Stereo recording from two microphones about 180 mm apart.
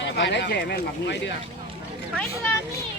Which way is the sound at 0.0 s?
75° left (ahead or behind).